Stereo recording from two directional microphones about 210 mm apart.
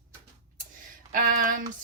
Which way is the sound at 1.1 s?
40° right (ahead or behind).